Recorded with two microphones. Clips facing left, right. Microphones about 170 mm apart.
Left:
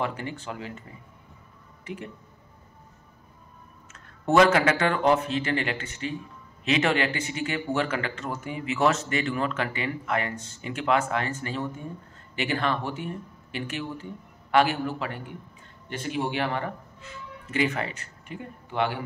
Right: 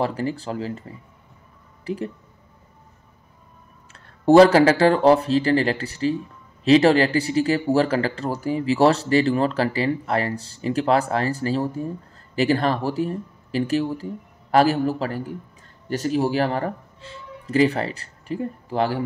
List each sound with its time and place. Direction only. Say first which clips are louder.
0.0 s speech: right 7 dB; 35° right (ahead or behind)
1.9 s speech: right 9 dB; 35° right (ahead or behind)
3.9 s speech: right 8 dB; 35° right (ahead or behind)